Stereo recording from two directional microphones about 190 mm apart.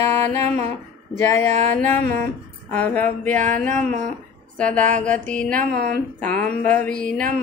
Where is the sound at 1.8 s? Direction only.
10° left (ahead or behind).